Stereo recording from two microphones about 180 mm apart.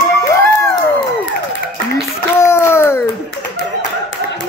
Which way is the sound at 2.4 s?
15° left (ahead or behind).